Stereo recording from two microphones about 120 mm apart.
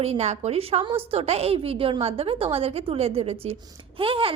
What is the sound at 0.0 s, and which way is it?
A woman's voice, 65° right (ahead or behind).